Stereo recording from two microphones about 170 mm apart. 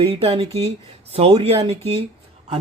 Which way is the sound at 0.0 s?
35° right (ahead or behind).